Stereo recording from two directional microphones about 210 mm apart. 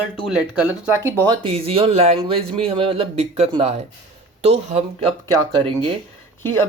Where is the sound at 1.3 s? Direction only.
25° right (ahead or behind).